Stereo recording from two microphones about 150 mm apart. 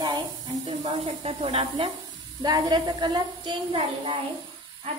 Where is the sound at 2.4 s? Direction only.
25° right (ahead or behind).